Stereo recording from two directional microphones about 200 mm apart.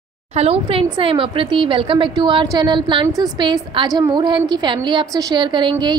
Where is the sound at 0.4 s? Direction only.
30° right (ahead or behind).